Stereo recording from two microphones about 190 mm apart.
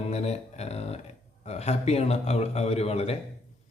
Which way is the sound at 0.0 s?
35° left (ahead or behind).